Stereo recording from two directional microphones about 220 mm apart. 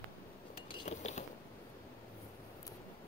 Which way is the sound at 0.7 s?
30° left (ahead or behind).